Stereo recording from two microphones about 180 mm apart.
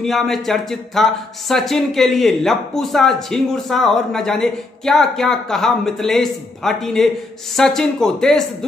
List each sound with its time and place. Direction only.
0.0 s speech: centre (ahead or behind)